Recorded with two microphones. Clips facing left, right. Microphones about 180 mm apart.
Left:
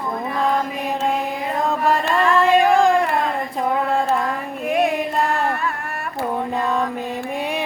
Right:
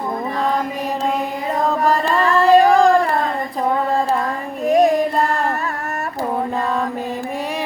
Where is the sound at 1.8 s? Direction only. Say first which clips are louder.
Even; 40° right (ahead or behind).